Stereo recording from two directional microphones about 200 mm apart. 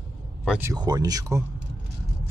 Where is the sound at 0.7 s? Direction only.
20° right (ahead or behind).